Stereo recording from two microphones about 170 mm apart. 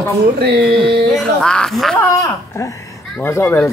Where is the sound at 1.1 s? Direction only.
5° left (ahead or behind).